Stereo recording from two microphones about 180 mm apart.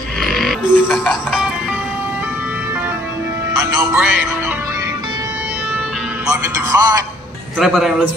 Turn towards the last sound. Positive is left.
turn(degrees=0)  # may be behind; listen again after turning